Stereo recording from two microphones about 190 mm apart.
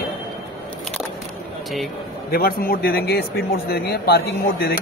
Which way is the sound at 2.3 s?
50° left (ahead or behind).